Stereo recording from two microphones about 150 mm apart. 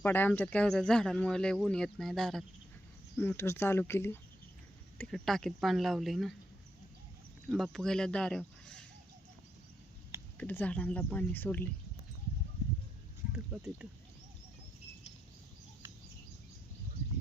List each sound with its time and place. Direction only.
0.0 s speech: 15° left (ahead or behind)
3.2 s speech: 15° left (ahead or behind)
4.9 s speech: 5° left (ahead or behind)
7.4 s speech: 5° left (ahead or behind)
10.3 s speech: 10° left (ahead or behind)
13.3 s oink: 5° right (ahead or behind)